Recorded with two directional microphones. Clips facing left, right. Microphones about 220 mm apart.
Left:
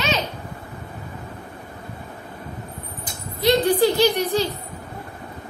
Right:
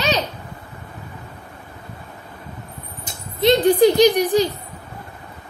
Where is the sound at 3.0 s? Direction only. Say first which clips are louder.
Right 3 dB; 20° right (ahead or behind).